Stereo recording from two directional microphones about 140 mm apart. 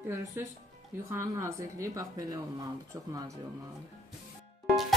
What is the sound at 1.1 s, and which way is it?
Speech, 20° right (ahead or behind).